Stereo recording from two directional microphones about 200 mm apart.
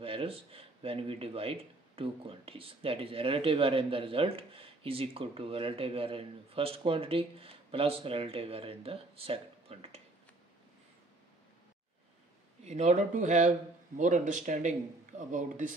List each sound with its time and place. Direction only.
0.0 s speech: 30° right (ahead or behind)
12.6 s speech: 35° right (ahead or behind)